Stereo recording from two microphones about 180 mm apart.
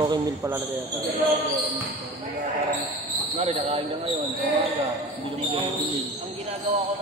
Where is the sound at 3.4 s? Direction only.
35° right (ahead or behind).